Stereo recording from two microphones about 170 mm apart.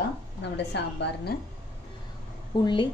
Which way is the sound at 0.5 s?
90° left.